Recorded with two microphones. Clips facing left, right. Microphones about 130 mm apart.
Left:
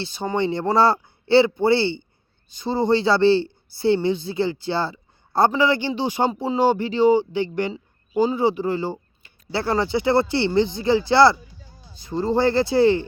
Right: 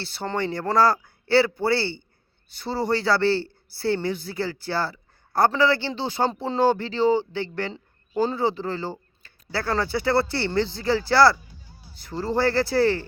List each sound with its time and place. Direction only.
0.0 s speech: 15° left (ahead or behind)